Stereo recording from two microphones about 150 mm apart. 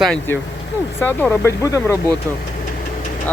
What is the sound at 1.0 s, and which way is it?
Speech, 15° left (ahead or behind).